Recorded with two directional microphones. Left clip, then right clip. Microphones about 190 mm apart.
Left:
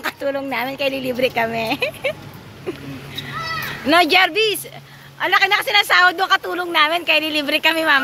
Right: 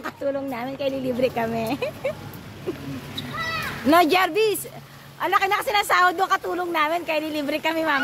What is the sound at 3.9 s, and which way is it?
Speech, 15° right (ahead or behind).